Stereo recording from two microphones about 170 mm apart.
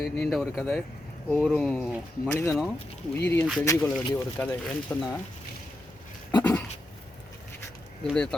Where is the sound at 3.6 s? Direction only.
15° left (ahead or behind).